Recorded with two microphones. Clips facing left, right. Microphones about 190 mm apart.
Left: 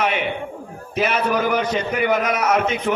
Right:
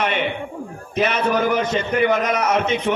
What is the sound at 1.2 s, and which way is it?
Speech, 25° right (ahead or behind).